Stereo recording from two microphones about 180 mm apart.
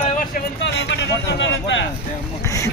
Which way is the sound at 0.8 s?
70° left (ahead or behind).